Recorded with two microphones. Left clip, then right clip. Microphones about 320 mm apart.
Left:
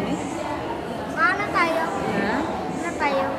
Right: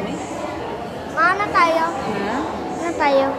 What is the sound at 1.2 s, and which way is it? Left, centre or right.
Children playing, right.